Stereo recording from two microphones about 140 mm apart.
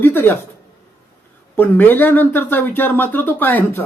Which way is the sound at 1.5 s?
15° left (ahead or behind).